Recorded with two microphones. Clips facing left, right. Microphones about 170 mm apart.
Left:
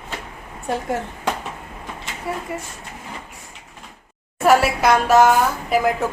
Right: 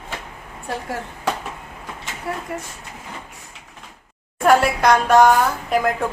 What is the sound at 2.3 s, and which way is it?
Speech, centre (ahead or behind).